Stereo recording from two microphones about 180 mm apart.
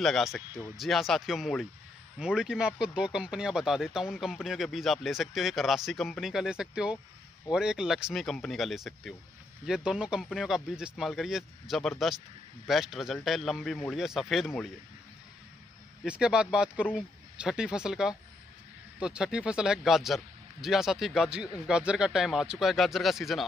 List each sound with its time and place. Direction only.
0.0 s speech: centre (ahead or behind)
16.0 s speech: 5° right (ahead or behind)